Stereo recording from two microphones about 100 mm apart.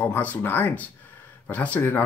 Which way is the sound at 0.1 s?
20° left (ahead or behind).